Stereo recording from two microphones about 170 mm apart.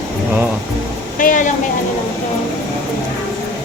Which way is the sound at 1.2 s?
50° left (ahead or behind).